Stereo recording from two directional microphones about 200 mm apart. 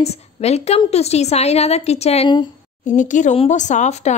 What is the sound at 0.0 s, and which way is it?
Speech, 30° left (ahead or behind).